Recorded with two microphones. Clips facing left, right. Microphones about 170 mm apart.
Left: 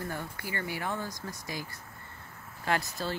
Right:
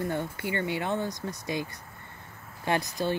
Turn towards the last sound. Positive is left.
turn(degrees=-20)  # may be behind; listen again after turning